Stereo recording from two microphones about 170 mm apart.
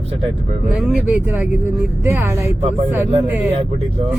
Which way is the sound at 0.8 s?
10° right (ahead or behind).